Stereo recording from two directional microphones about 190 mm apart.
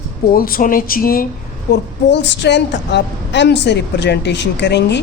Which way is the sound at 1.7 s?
65° left (ahead or behind).